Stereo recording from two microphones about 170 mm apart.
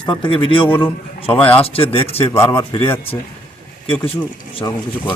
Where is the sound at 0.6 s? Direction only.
10° left (ahead or behind).